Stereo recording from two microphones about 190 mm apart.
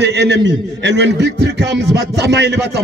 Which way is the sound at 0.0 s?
65° right (ahead or behind).